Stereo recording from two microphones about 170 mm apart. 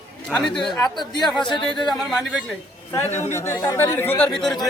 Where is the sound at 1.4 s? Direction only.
30° left (ahead or behind).